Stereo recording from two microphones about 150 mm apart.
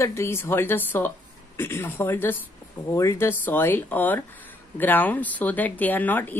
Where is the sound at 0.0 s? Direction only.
20° left (ahead or behind).